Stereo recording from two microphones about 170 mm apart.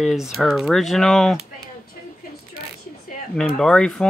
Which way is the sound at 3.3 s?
5° left (ahead or behind).